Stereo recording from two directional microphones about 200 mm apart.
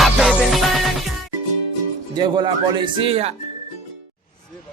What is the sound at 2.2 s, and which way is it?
Speech, 20° right (ahead or behind).